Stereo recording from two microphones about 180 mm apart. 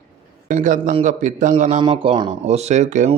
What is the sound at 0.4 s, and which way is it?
Speech, 45° right (ahead or behind).